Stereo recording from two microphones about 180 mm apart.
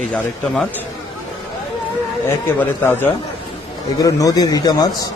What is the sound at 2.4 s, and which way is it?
Speech, 10° left (ahead or behind).